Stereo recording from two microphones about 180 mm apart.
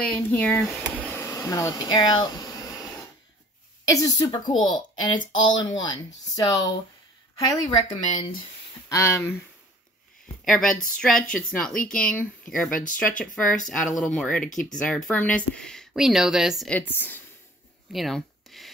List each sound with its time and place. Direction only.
0.0 s a woman's voice: 5° left (ahead or behind)
10.4 s a woman's voice: 5° left (ahead or behind)
13.4 s speech: 50° left (ahead or behind)
13.7 s a woman's voice: centre (ahead or behind)
14.5 s speech: 45° left (ahead or behind)
14.8 s a woman's voice: 5° left (ahead or behind)
17.9 s a sound: centre (ahead or behind)